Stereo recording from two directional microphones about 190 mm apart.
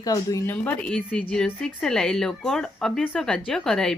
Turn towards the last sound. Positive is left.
turn(degrees=0)  # may be behind; listen again after turning